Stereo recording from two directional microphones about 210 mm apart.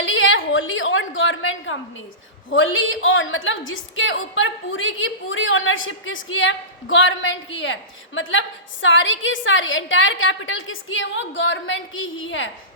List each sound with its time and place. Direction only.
0.0 s a woman's voice: 65° left (ahead or behind)